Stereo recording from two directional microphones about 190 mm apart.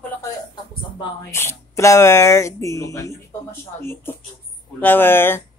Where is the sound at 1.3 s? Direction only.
15° left (ahead or behind).